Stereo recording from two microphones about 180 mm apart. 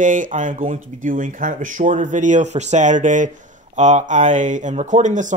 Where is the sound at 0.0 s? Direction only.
45° right (ahead or behind).